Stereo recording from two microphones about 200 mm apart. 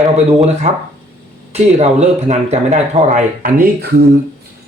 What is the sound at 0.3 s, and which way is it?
Speech, 30° right (ahead or behind).